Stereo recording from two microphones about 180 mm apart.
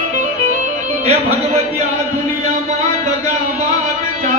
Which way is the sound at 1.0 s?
35° right (ahead or behind).